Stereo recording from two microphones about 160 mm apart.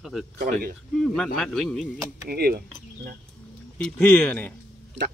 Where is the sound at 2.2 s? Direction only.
75° right (ahead or behind).